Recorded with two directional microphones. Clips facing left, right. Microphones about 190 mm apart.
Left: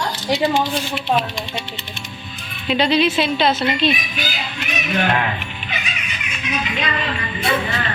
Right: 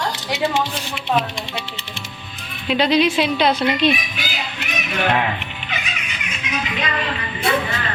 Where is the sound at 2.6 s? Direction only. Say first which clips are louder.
Even; 10° right (ahead or behind).